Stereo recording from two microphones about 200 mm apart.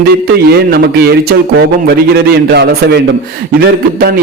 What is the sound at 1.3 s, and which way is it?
A man's voice, 50° right (ahead or behind).